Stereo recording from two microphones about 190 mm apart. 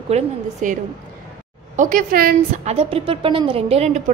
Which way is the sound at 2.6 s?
30° right (ahead or behind).